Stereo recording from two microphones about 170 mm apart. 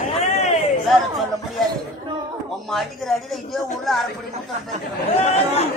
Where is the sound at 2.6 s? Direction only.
Centre (ahead or behind).